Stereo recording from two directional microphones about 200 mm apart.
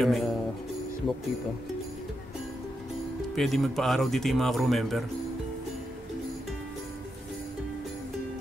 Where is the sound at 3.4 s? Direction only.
Centre (ahead or behind).